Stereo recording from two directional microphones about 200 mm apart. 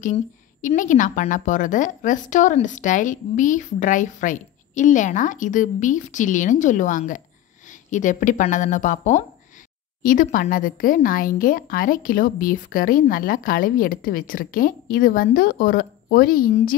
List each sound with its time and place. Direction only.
0.0 s a woman's voice: 40° left (ahead or behind)